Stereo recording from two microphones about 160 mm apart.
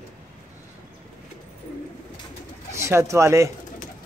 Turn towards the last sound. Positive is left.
turn(degrees=-20)  # may be behind; listen again after turning